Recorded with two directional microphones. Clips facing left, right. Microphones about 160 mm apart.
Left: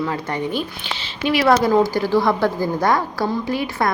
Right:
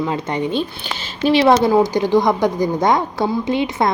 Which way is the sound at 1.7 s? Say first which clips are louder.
Right 2 dB; 15° right (ahead or behind).